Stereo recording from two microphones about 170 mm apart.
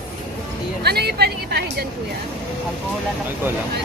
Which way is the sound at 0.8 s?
70° right (ahead or behind).